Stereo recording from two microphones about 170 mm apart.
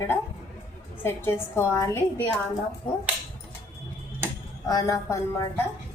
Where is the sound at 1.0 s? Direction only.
15° left (ahead or behind).